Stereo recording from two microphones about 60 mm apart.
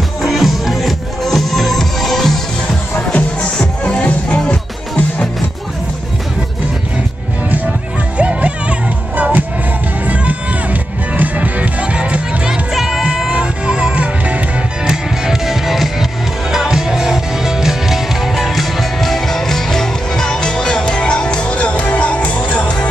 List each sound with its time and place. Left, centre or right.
0.2 s music: centre; by 5.3 s left
8.2 s music: centre
12.7 s music: centre
13.0 s music: centre
14.9 s music: centre; by 22.8 s left